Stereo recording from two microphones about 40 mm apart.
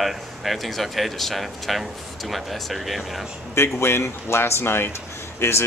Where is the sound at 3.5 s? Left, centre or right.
Left.